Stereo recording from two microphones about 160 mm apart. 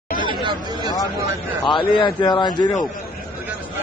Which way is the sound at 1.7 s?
30° left (ahead or behind).